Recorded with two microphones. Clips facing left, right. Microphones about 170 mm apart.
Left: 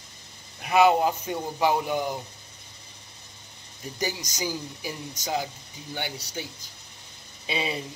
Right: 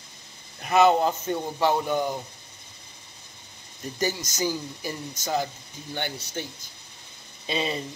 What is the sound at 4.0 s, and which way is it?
A man's voice, 15° left (ahead or behind).